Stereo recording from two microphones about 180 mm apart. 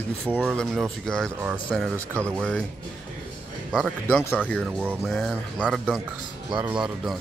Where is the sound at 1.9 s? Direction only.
15° right (ahead or behind).